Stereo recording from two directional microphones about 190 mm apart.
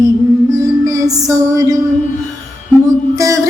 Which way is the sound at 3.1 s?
15° right (ahead or behind).